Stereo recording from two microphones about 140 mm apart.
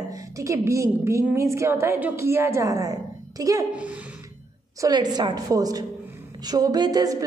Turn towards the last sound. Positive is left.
turn(degrees=-25)  # may be behind; listen again after turning